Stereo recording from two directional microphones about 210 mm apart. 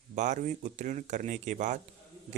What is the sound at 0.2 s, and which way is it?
Speech, 35° right (ahead or behind).